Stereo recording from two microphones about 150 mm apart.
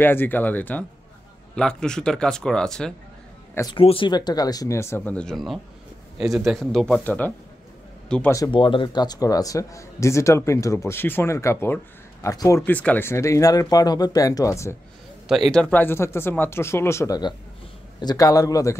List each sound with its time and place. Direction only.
0.0 s speech: 15° left (ahead or behind)
3.7 s a man's voice: 35° left (ahead or behind); by 8.3 s 5° left (ahead or behind)
8.5 s a man's voice: 35° left (ahead or behind); by 14.8 s 20° left (ahead or behind)
15.2 s a man's voice: centre (ahead or behind); by 18.8 s 20° left (ahead or behind)